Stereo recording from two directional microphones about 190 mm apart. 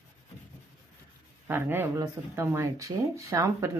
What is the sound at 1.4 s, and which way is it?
Speech, 10° right (ahead or behind).